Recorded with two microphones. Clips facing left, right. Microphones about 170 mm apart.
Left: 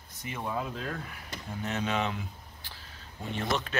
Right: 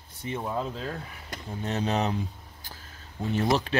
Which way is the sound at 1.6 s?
35° right (ahead or behind).